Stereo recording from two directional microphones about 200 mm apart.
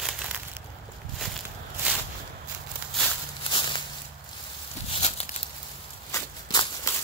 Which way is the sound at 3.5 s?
25° left (ahead or behind).